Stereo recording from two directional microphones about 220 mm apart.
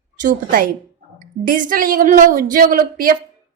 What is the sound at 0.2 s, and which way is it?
A woman's voice, 40° right (ahead or behind).